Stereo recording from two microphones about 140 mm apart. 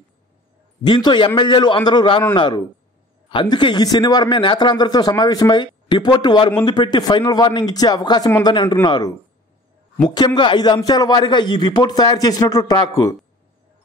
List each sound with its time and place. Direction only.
0.8 s a man's voice: 35° left (ahead or behind)